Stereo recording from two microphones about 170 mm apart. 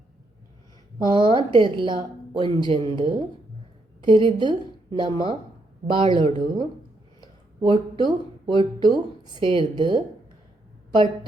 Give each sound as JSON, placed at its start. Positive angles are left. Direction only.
{"t": 1.0, "sound": "a woman's voice", "side_deg": -25}